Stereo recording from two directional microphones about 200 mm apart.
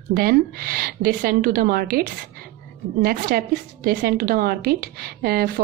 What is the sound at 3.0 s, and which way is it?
A woman's voice, 45° right (ahead or behind).